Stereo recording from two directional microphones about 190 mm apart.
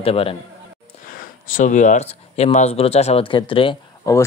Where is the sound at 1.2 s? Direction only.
45° left (ahead or behind); by 3.8 s 25° left (ahead or behind).